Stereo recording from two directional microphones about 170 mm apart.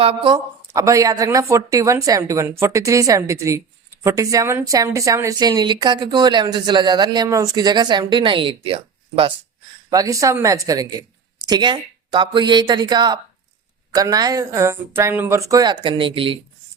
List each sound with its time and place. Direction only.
0.0 s speech: 30° right (ahead or behind)
0.7 s a woman's voice: 20° right (ahead or behind)
9.9 s a woman's voice: 20° right (ahead or behind)